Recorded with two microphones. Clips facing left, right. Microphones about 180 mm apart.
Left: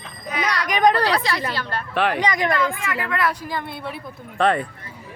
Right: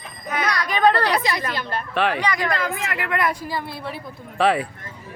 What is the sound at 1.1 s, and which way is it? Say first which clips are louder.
Speech: even; 15° right (ahead or behind).